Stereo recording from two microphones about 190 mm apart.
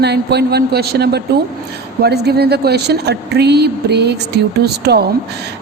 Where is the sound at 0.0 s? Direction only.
60° right (ahead or behind).